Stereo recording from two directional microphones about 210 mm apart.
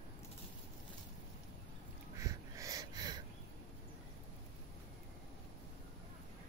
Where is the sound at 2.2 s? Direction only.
15° right (ahead or behind).